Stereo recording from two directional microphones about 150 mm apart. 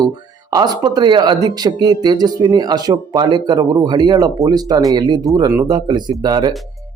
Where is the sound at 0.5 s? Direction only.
25° right (ahead or behind).